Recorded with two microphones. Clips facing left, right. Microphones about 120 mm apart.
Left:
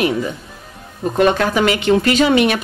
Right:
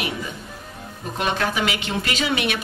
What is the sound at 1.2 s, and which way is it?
A woman's voice, 50° left (ahead or behind).